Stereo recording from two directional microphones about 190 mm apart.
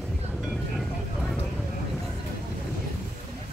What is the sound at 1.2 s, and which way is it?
Vehicle, centre (ahead or behind).